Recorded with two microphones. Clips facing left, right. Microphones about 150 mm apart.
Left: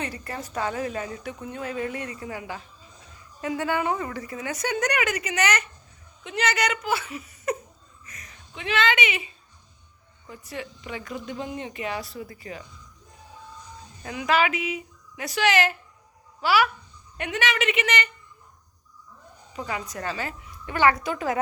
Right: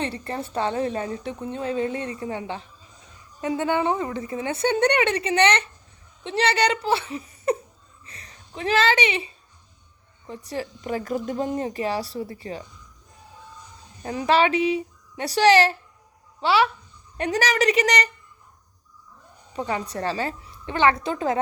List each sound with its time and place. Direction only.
0.0 s a woman's voice: 30° right (ahead or behind)
8.0 s a sound: 30° right (ahead or behind)
10.2 s speech: 30° right (ahead or behind)
14.0 s a woman's voice: 30° right (ahead or behind)
17.2 s speech: 35° right (ahead or behind)
19.5 s a woman's voice: 30° right (ahead or behind)